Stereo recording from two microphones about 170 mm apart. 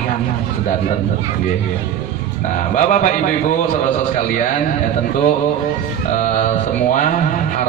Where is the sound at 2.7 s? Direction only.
45° left (ahead or behind).